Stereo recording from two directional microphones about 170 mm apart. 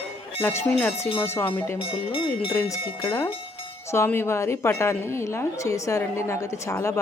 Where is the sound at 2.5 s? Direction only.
15° left (ahead or behind).